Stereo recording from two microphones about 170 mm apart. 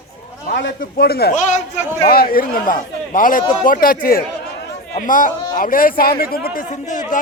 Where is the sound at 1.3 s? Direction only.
45° left (ahead or behind).